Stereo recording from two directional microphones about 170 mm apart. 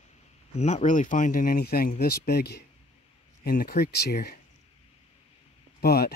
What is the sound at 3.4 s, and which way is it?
Speech, 60° left (ahead or behind).